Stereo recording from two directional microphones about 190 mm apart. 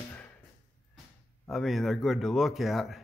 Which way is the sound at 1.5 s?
Centre (ahead or behind).